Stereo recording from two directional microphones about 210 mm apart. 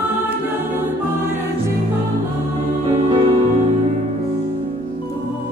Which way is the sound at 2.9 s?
25° right (ahead or behind).